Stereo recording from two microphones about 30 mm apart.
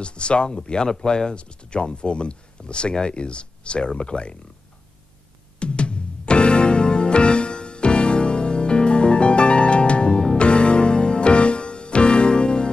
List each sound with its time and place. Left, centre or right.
0.0 s speech: left
5.6 s music: left